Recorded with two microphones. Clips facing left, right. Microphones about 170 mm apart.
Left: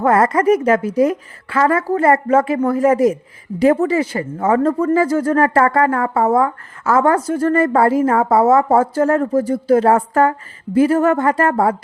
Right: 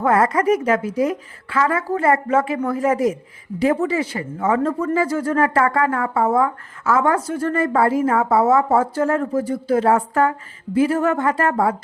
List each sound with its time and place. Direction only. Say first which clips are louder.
0.0 s speech: left 3 dB; 45° left (ahead or behind)